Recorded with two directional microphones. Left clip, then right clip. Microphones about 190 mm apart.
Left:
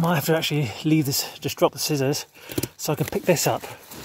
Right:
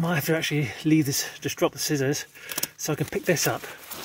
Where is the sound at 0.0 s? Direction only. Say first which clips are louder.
Left 3 dB; 30° left (ahead or behind).